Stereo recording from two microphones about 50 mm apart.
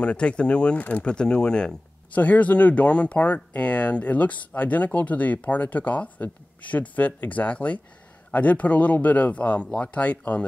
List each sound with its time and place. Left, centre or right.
0.0 s speech: left
2.1 s speech: left